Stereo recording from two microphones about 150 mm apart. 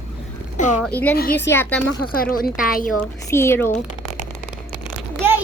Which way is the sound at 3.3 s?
15° left (ahead or behind).